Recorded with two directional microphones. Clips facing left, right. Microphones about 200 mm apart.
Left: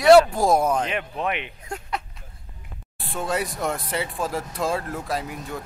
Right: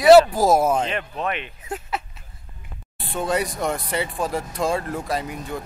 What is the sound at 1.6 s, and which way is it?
Speech, 5° right (ahead or behind).